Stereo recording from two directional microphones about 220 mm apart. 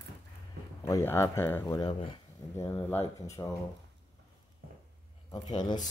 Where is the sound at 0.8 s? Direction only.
15° left (ahead or behind).